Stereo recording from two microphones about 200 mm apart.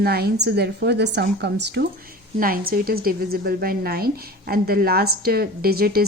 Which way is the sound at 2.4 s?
45° right (ahead or behind).